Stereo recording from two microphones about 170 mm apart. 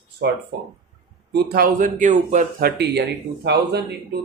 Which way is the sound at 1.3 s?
65° right (ahead or behind).